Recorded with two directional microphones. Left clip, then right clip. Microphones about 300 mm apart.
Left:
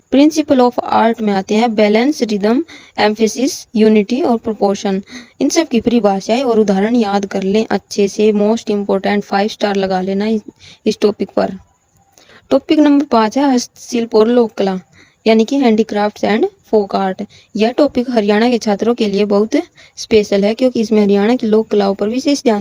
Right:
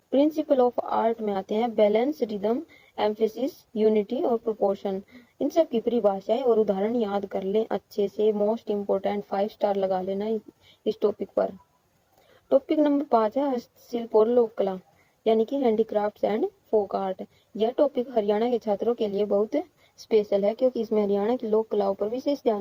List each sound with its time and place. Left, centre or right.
0.1 s a woman's voice: left